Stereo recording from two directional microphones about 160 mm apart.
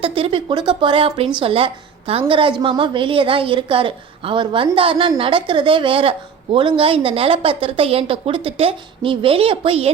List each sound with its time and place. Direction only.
0.0 s a woman's voice: 35° right (ahead or behind)